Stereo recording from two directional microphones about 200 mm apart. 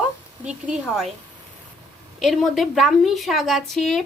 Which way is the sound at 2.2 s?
Centre (ahead or behind).